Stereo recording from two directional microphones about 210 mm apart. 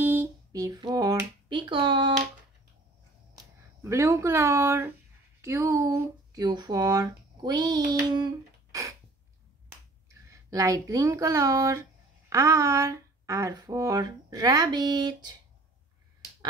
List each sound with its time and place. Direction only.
0.0 s a sound: 10° right (ahead or behind)
3.8 s speech: 15° right (ahead or behind)
9.7 s finger snapping: 15° right (ahead or behind)
12.3 s speech: 15° right (ahead or behind)